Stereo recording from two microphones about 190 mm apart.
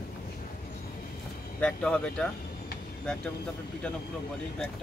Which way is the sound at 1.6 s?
5° left (ahead or behind).